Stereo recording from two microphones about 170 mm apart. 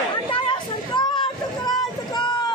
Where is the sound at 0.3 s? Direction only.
30° left (ahead or behind).